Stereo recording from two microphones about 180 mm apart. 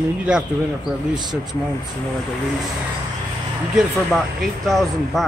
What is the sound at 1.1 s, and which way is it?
Speech, 25° right (ahead or behind).